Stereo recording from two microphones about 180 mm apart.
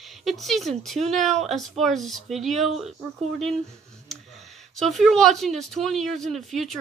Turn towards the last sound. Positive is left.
turn(degrees=0)  # may be behind; listen again after turning